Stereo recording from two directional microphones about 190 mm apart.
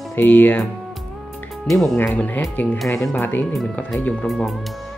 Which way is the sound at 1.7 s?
Centre (ahead or behind).